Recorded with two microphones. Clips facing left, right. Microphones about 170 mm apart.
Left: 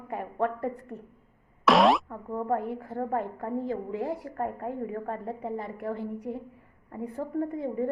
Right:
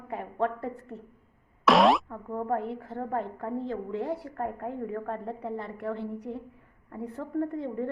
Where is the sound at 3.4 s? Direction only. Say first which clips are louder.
Left 1 dB; 10° left (ahead or behind).